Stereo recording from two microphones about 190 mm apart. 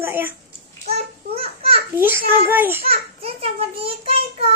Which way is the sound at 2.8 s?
30° right (ahead or behind).